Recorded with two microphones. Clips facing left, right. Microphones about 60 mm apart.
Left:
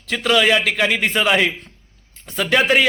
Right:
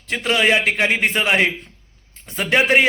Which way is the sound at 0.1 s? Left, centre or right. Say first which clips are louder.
Left 1 dB; right.